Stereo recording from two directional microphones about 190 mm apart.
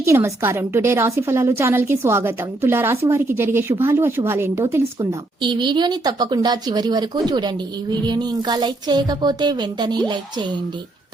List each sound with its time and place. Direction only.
0.0 s a woman's voice: 15° right (ahead or behind)